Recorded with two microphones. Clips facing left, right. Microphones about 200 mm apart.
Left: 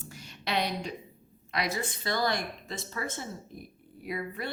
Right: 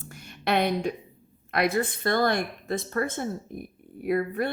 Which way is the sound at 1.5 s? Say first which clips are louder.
Right 7 dB; 55° right (ahead or behind).